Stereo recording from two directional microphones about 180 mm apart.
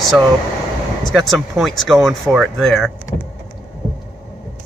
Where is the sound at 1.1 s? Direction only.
Centre (ahead or behind).